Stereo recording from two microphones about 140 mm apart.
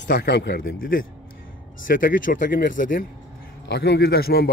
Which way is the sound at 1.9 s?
80° left.